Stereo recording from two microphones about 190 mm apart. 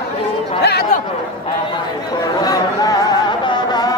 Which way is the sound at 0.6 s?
60° left (ahead or behind).